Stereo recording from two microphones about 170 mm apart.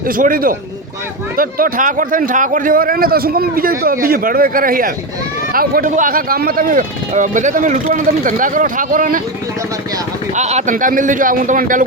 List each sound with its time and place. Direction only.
0.1 s a man's voice: 55° right (ahead or behind)
10.3 s speech: 40° right (ahead or behind)